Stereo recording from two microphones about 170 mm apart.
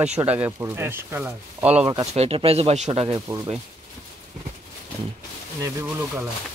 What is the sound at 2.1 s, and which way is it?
Speech, 35° right (ahead or behind).